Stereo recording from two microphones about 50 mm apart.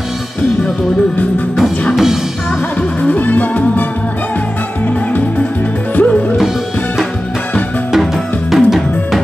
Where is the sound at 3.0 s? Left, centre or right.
Left.